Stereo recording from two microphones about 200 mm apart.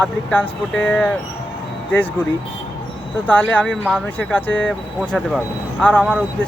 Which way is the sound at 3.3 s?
5° left (ahead or behind).